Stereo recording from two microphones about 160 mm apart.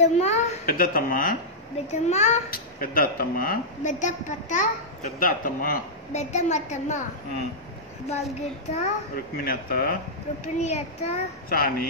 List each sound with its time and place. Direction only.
0.0 s a woman's voice: 45° left (ahead or behind)
0.7 s a woman's voice: 65° left (ahead or behind)
1.9 s a woman's voice: 45° left (ahead or behind)
2.5 s a woman's voice: 65° left (ahead or behind)
6.1 s a woman's voice: 45° left (ahead or behind)
8.1 s a woman's voice: 45° left (ahead or behind)
9.4 s speech: 70° left (ahead or behind)
10.4 s a woman's voice: 45° left (ahead or behind)
11.4 s a woman's voice: 65° left (ahead or behind)